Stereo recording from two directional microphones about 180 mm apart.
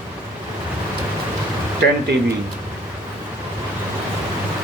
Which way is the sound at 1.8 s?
75° right (ahead or behind).